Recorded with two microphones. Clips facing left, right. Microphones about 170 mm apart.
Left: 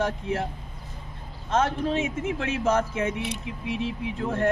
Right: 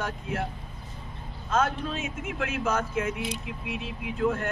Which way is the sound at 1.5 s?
30° left (ahead or behind).